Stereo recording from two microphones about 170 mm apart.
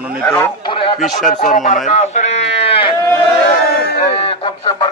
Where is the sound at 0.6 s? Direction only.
30° left (ahead or behind).